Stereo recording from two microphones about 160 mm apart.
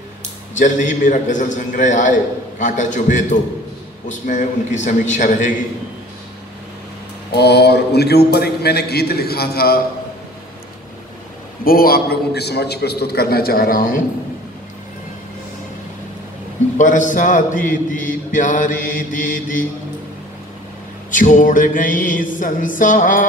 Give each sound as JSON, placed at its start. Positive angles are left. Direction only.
{"t": 0.6, "sound": "mantra", "side_deg": 50}
{"t": 7.3, "sound": "a man's voice", "side_deg": 90}
{"t": 11.6, "sound": "a man's voice", "side_deg": 65}
{"t": 16.7, "sound": "mantra", "side_deg": 50}
{"t": 21.1, "sound": "mantra", "side_deg": 55}